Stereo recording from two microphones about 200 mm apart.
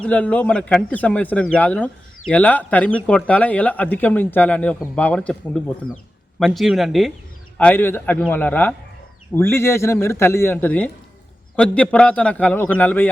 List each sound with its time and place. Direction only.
0.0 s a man's voice: 5° left (ahead or behind)